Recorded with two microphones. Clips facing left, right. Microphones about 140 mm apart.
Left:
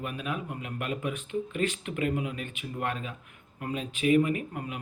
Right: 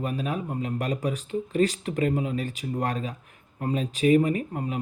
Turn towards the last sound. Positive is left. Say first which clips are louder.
# right 4 dB
turn(degrees=-35)  # may be behind; listen again after turning